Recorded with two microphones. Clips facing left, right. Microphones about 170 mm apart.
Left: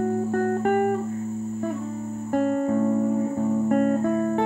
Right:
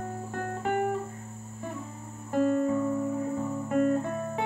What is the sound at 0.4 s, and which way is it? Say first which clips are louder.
Music: left 6 dB; 50° left (ahead or behind).